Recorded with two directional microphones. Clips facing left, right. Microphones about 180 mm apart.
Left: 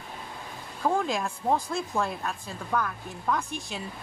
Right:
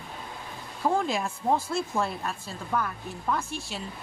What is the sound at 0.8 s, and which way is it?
Speech, 5° right (ahead or behind).